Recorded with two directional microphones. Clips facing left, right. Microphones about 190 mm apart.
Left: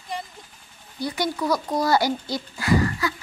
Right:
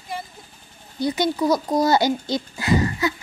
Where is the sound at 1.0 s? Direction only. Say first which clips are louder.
Right 5 dB; 20° right (ahead or behind).